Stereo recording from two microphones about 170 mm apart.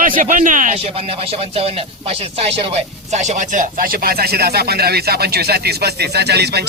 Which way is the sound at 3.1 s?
45° right (ahead or behind).